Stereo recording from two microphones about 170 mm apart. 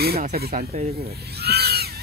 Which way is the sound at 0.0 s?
65° right (ahead or behind).